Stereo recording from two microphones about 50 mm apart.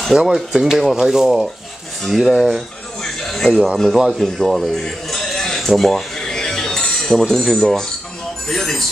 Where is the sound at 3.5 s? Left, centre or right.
Centre.